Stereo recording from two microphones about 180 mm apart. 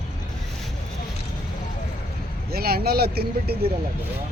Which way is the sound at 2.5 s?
60° right (ahead or behind).